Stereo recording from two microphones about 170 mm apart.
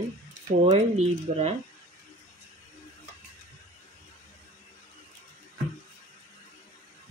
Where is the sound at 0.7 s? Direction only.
40° right (ahead or behind).